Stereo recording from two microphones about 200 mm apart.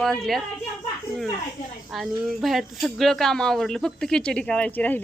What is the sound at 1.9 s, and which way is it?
A woman's voice, centre (ahead or behind).